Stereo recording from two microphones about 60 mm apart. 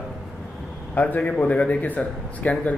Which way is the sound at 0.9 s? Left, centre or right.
Left.